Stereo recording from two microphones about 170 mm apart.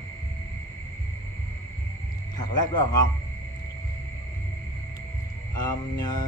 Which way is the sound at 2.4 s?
25° left (ahead or behind).